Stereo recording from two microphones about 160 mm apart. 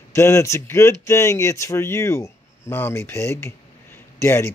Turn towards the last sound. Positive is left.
turn(degrees=15)  # may be behind; listen again after turning